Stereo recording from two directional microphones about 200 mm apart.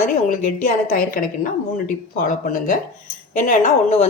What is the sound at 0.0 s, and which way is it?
Speech, 40° left (ahead or behind).